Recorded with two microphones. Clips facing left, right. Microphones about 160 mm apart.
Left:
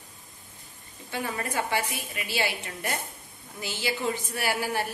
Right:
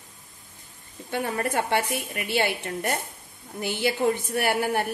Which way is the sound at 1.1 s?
60° right (ahead or behind).